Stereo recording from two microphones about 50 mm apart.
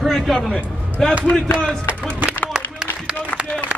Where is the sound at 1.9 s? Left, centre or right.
Right.